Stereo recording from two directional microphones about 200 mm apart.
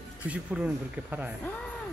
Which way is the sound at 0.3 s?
5° right (ahead or behind).